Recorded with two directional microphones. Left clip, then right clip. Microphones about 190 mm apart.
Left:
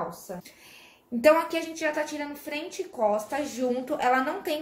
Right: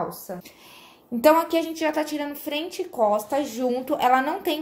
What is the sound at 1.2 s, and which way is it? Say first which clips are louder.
Speech: right 3 dB; 30° right (ahead or behind).